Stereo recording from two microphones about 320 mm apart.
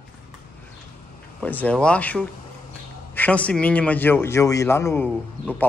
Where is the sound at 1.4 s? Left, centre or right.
Centre.